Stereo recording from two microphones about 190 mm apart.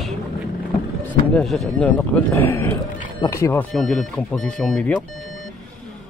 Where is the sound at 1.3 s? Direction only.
Centre (ahead or behind).